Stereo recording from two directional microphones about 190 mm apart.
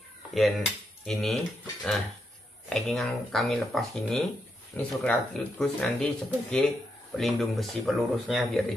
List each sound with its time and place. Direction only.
1.0 s speech: centre (ahead or behind)